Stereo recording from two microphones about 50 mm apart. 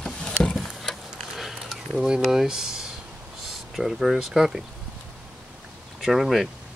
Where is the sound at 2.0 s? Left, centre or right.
Centre.